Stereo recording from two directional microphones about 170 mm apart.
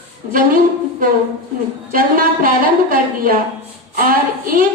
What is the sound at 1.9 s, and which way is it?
A woman's voice, 55° right (ahead or behind).